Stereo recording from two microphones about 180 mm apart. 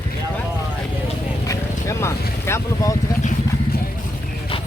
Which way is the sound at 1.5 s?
15° left (ahead or behind).